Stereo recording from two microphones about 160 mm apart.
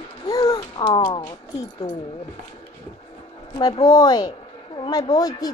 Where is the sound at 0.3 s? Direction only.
25° left (ahead or behind).